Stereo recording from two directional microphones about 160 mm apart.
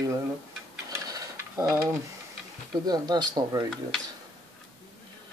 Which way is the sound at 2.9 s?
25° right (ahead or behind).